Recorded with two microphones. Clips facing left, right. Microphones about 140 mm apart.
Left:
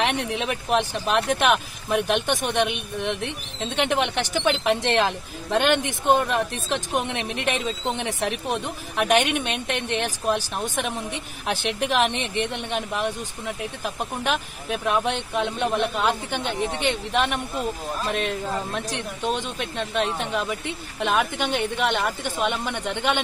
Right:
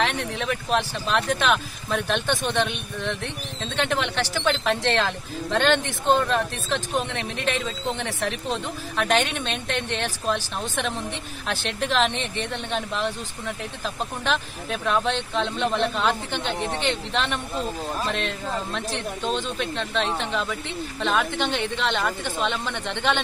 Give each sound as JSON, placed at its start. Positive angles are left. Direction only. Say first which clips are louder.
{"t": 0.0, "sound": "speech", "louder": "left 1 dB", "side_deg": 20}